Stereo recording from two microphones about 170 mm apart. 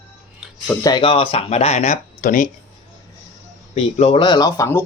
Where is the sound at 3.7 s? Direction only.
40° left (ahead or behind).